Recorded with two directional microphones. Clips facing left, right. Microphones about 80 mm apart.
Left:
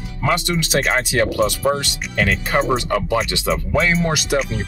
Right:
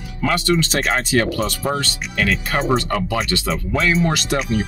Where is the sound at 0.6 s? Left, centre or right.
Centre; by 2.6 s left.